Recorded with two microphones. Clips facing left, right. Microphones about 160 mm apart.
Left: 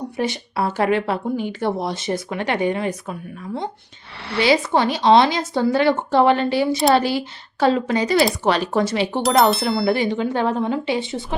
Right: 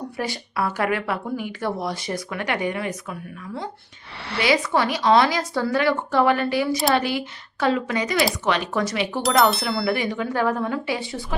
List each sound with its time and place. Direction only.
0.2 s a woman's voice: 25° left (ahead or behind)
9.2 s speech: centre (ahead or behind)
9.8 s a woman's voice: 30° left (ahead or behind)